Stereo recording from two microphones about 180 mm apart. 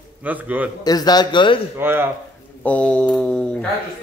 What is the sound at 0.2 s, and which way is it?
Speech, 10° right (ahead or behind).